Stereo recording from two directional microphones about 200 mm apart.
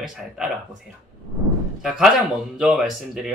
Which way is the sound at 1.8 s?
Centre (ahead or behind).